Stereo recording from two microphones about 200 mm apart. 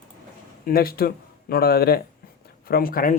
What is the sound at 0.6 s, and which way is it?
Speech, 50° left (ahead or behind).